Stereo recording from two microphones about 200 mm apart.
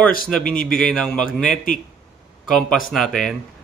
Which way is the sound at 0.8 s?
5° left (ahead or behind).